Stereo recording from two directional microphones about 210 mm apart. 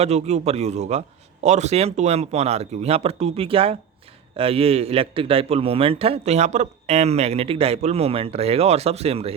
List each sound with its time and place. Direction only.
0.0 s a man's voice: 30° right (ahead or behind)